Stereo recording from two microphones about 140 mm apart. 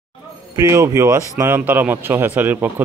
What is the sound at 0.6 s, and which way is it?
A man's voice, 20° right (ahead or behind).